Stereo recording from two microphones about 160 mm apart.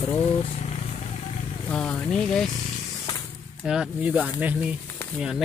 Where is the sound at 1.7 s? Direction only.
5° left (ahead or behind).